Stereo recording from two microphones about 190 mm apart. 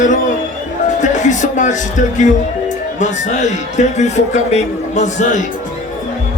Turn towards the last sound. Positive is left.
turn(degrees=40)  # may be behind; listen again after turning